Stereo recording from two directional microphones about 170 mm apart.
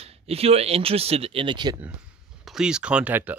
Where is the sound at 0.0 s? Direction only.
35° right (ahead or behind).